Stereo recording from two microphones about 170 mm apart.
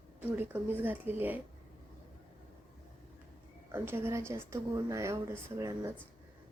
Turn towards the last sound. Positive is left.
turn(degrees=-20)  # may be behind; listen again after turning